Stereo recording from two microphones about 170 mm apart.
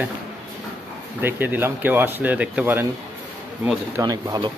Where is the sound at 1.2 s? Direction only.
10° right (ahead or behind).